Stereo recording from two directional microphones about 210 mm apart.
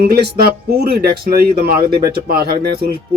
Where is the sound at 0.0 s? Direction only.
45° right (ahead or behind).